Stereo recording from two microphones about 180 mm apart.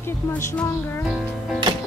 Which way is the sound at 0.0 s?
15° left (ahead or behind).